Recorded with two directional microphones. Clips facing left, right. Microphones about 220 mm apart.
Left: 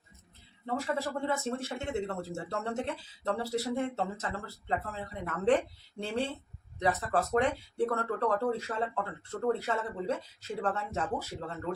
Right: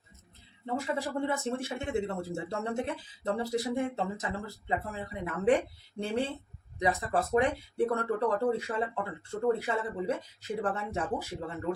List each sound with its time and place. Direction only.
0.6 s speech: 15° right (ahead or behind)